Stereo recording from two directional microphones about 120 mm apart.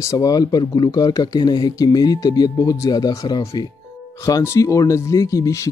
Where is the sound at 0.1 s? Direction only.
30° left (ahead or behind).